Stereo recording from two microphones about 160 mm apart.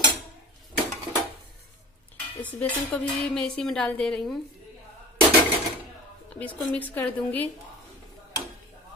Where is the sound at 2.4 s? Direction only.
10° left (ahead or behind).